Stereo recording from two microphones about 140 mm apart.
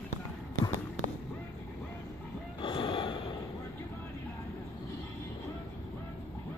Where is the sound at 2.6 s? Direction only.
35° left (ahead or behind).